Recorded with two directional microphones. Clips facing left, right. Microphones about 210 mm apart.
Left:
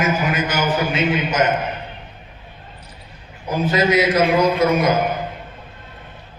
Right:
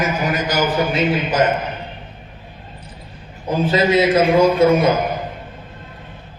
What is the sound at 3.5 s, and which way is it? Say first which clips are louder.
A man's voice: right 2 dB; 30° right (ahead or behind).